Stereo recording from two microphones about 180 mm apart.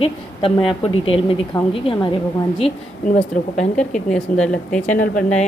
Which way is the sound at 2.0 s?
30° left (ahead or behind).